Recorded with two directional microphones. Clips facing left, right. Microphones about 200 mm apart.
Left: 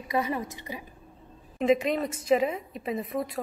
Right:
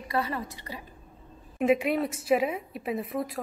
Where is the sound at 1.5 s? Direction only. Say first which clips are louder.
Even; 10° right (ahead or behind).